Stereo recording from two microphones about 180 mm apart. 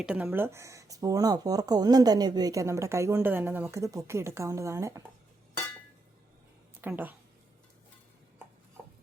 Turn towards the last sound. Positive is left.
turn(degrees=-10)  # may be behind; listen again after turning